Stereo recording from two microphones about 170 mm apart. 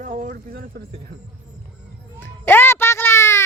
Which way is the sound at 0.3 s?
60° right (ahead or behind).